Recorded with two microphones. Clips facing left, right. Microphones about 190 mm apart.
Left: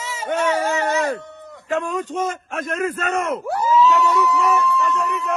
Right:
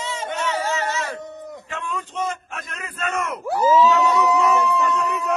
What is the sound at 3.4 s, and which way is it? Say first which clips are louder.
Speech: right 2 dB; centre (ahead or behind).